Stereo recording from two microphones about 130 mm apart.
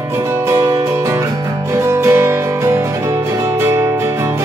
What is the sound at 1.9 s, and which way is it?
Music, 20° right (ahead or behind).